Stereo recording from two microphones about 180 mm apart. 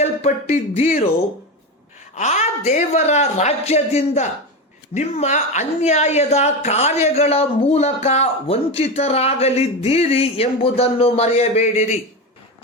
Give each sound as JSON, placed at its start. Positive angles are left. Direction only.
{"t": 0.0, "sound": "speech", "side_deg": 40}
{"t": 2.1, "sound": "a woman's voice", "side_deg": 40}